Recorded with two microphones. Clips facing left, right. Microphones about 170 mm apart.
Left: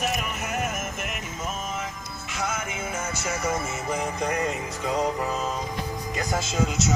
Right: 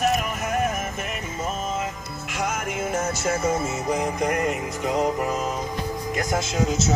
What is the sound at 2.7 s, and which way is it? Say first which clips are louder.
Music: right 6 dB; 40° right (ahead or behind).